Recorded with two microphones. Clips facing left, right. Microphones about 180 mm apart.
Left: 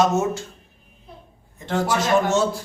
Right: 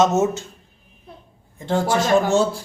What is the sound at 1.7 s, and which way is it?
Speech, 30° right (ahead or behind).